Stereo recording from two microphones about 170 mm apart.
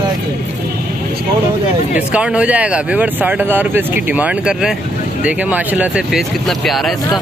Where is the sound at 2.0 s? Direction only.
5° right (ahead or behind).